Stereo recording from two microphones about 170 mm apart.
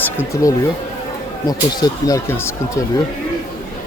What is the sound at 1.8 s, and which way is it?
Speech, 20° left (ahead or behind).